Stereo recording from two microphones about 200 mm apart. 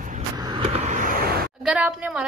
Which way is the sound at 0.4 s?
25° right (ahead or behind).